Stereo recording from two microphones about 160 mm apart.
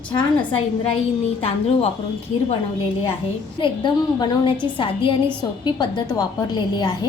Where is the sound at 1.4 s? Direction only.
35° left (ahead or behind).